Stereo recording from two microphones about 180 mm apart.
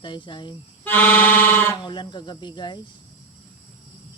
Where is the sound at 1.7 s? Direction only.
25° left (ahead or behind).